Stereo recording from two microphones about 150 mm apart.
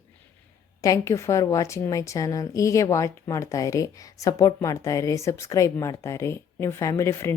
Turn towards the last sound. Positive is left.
turn(degrees=15)  # may be behind; listen again after turning